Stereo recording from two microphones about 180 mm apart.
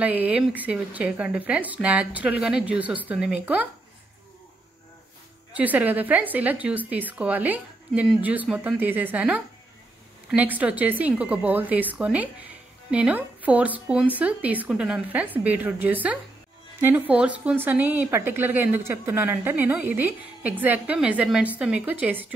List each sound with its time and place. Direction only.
0.0 s a woman's voice: 10° right (ahead or behind)
5.5 s a woman's voice: 10° right (ahead or behind)